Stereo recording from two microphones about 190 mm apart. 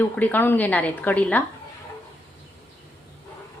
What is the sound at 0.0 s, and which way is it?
A woman's voice, 10° left (ahead or behind).